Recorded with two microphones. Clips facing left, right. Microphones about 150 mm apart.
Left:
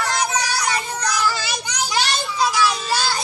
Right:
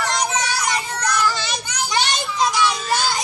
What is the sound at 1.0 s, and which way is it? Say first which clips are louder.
Children playing: right 1 dB; 10° left (ahead or behind).